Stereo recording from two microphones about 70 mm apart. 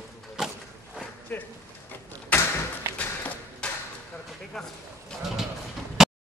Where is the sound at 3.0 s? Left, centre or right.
Left.